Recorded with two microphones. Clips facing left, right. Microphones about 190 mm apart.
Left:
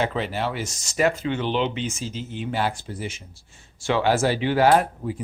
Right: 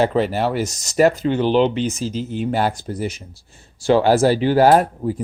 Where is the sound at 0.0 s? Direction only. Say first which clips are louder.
Right 7 dB; 40° right (ahead or behind).